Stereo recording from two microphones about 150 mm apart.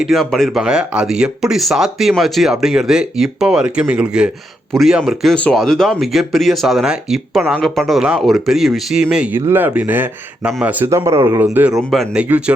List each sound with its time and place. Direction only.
0.0 s speech: centre (ahead or behind)